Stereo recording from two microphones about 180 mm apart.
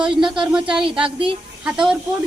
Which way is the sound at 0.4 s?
5° right (ahead or behind).